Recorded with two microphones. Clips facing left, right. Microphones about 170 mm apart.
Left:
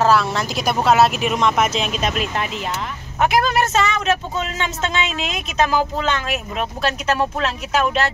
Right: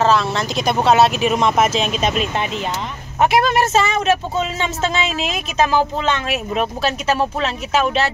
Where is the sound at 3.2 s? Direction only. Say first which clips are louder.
Right 2 dB; 30° right (ahead or behind).